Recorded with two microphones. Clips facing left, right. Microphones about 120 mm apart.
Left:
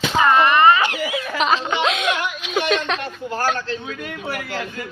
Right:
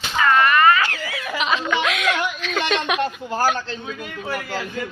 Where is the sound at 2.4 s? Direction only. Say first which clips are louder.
Left 2 dB; 15° left (ahead or behind).